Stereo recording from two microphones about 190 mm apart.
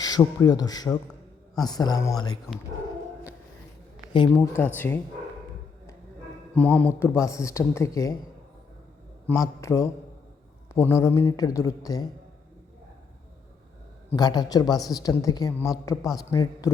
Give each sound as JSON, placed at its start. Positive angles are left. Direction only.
{"t": 0.0, "sound": "a woman's voice", "side_deg": 20}
{"t": 4.4, "sound": "speech", "side_deg": 10}
{"t": 6.5, "sound": "speech", "side_deg": 5}
{"t": 9.2, "sound": "speech", "side_deg": 15}
{"t": 14.1, "sound": "a woman's voice", "side_deg": 20}